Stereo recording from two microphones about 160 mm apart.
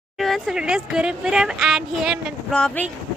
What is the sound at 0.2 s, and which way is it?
Speech, centre (ahead or behind).